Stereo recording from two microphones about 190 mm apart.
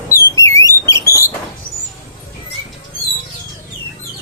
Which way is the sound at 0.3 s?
15° left (ahead or behind).